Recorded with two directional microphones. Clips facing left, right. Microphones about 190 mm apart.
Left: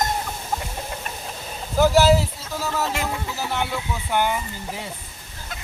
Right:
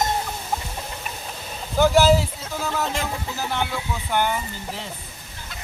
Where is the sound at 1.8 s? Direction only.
5° left (ahead or behind).